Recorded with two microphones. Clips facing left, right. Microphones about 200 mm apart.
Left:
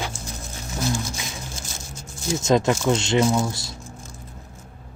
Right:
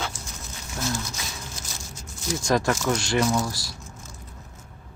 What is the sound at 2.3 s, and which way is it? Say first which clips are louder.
Speech: left 4 dB; 20° left (ahead or behind).